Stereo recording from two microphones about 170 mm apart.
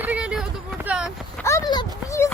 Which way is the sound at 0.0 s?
5° right (ahead or behind).